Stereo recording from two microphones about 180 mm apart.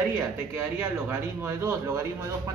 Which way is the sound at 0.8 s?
15° right (ahead or behind).